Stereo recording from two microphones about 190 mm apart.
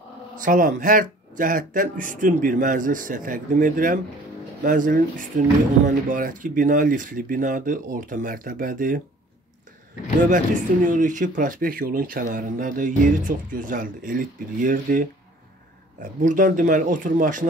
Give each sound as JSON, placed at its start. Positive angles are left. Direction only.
{"t": 0.4, "sound": "speech", "side_deg": -45}
{"t": 10.2, "sound": "speech", "side_deg": -45}